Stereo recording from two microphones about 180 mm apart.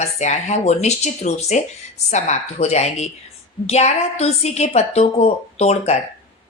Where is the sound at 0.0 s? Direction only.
40° left (ahead or behind).